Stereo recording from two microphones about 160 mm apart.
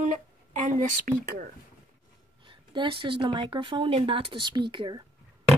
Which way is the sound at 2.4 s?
30° right (ahead or behind).